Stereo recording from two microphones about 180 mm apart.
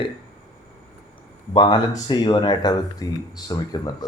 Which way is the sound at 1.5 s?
25° left (ahead or behind).